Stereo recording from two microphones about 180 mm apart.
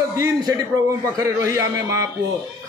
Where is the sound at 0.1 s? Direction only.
20° right (ahead or behind).